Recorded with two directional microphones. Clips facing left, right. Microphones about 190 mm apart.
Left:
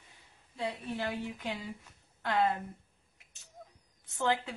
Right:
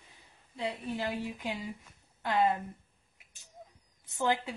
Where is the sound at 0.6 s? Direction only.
20° right (ahead or behind).